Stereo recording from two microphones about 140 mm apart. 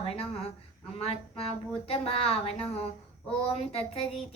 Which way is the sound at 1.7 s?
45° left (ahead or behind).